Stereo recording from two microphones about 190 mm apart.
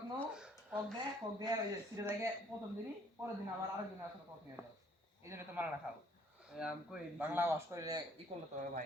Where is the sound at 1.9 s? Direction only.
15° right (ahead or behind).